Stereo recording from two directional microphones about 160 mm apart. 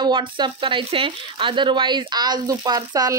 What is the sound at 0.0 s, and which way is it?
Speech, 30° right (ahead or behind).